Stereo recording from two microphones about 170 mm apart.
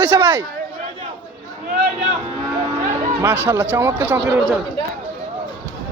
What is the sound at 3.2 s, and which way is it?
Speech, 15° right (ahead or behind).